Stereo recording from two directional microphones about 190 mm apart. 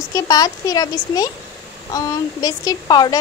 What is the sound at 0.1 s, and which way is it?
A woman's voice, 20° left (ahead or behind).